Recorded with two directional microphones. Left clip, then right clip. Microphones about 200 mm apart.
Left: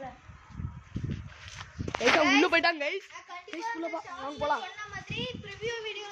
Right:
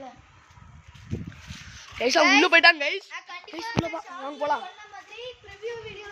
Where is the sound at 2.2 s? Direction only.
25° right (ahead or behind).